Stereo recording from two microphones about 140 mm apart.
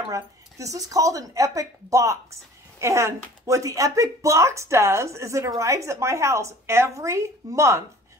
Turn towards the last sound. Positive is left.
turn(degrees=-20)  # may be behind; listen again after turning